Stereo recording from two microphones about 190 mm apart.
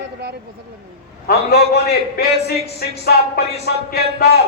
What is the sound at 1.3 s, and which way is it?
A man's voice, 55° left (ahead or behind).